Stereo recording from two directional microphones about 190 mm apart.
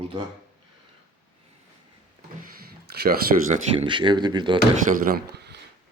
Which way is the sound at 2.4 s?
50° right (ahead or behind).